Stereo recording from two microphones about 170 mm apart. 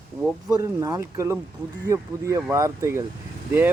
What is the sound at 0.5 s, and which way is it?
Speech, 20° right (ahead or behind).